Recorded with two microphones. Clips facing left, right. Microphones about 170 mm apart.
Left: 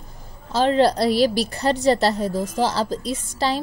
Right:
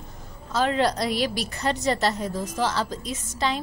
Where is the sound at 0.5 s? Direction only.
30° left (ahead or behind).